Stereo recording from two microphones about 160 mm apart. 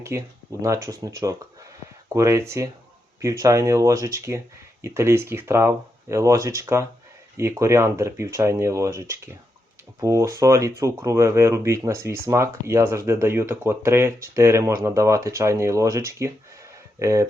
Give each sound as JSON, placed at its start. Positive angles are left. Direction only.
{"t": 0.6, "sound": "speech", "side_deg": -20}